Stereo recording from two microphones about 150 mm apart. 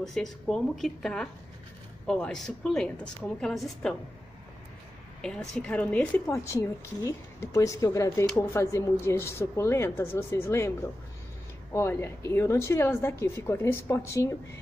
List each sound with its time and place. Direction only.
0.0 s a woman's voice: centre (ahead or behind)
5.2 s a woman's voice: 5° left (ahead or behind)